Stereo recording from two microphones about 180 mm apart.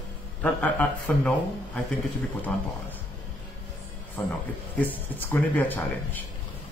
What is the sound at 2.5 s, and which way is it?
Speech, 10° left (ahead or behind).